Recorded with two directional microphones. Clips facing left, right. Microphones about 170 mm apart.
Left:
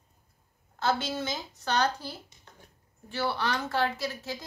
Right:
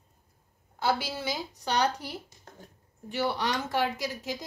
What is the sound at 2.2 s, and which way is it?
Speech, 45° right (ahead or behind).